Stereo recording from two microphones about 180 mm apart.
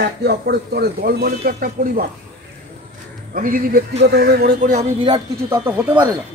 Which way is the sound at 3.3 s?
50° right (ahead or behind).